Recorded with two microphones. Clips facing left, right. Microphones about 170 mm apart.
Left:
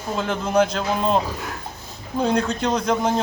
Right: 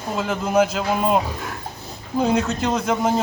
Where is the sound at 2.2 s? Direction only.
5° right (ahead or behind).